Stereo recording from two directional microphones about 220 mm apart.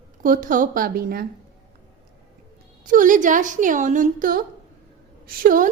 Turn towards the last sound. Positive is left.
turn(degrees=-40)  # may be behind; listen again after turning